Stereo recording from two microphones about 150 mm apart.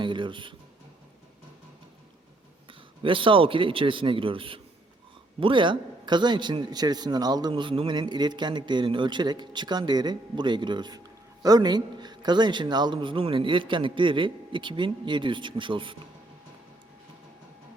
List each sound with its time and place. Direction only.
0.0 s speech: 30° right (ahead or behind)
2.6 s a man's voice: 35° right (ahead or behind)